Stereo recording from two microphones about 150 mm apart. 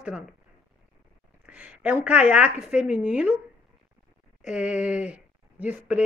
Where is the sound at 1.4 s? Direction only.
10° right (ahead or behind).